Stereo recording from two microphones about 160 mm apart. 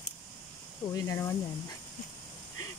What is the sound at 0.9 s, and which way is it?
Speech, 20° left (ahead or behind).